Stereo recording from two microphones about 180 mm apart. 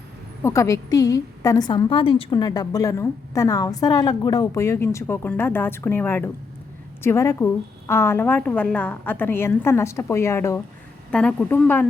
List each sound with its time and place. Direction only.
0.4 s a woman's voice: 15° left (ahead or behind)